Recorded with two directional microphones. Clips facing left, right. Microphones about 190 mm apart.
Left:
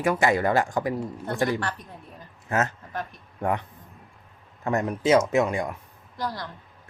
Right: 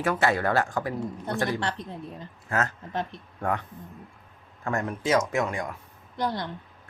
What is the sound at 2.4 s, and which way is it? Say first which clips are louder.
Speech: left 2 dB; 20° left (ahead or behind).